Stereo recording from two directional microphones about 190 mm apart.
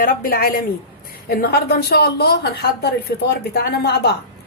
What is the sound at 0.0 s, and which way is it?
A woman's voice, 50° left (ahead or behind).